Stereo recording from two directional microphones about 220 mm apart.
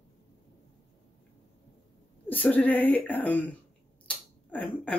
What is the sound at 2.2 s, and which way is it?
Speech, 5° left (ahead or behind).